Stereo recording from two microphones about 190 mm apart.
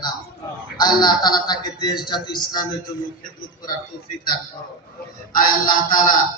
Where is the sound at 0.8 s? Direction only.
20° left (ahead or behind).